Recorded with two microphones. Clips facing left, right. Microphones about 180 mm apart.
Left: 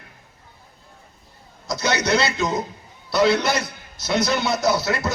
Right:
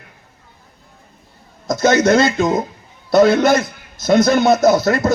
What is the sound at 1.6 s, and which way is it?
A man's voice, 50° right (ahead or behind).